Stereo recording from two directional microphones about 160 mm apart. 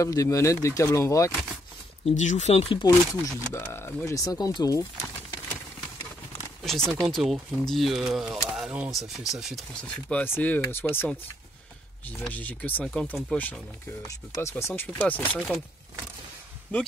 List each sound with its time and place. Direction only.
0.0 s speech: 20° left (ahead or behind)
2.0 s speech: 45° left (ahead or behind)
2.8 s speech: 20° left (ahead or behind)
6.9 s speech: centre (ahead or behind)
12.2 s speech: 10° left (ahead or behind)